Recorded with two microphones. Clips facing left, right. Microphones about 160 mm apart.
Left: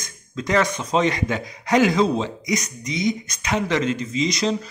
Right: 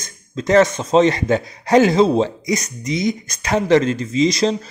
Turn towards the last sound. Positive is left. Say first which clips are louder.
# right 6 dB
turn(degrees=-35)  # may be behind; listen again after turning